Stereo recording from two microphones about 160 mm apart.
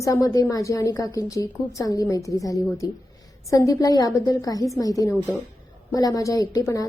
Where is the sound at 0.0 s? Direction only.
20° left (ahead or behind).